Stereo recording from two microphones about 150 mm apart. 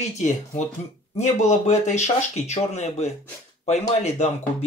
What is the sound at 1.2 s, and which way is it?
Speech, 50° left (ahead or behind).